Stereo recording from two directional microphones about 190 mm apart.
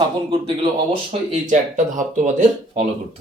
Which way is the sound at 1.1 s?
40° right (ahead or behind).